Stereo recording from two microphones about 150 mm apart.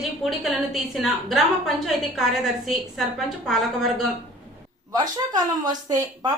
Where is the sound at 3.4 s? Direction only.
Centre (ahead or behind).